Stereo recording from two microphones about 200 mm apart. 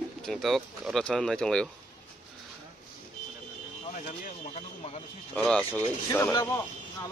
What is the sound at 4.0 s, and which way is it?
Speech, 35° left (ahead or behind).